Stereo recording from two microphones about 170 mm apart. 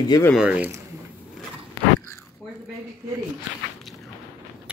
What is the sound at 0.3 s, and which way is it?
Speech, 5° right (ahead or behind).